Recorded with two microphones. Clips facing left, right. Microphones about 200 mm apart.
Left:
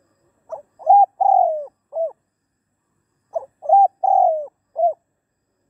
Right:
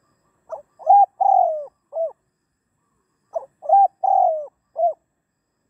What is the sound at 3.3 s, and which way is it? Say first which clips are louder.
Bird: left 1 dB; 10° left (ahead or behind).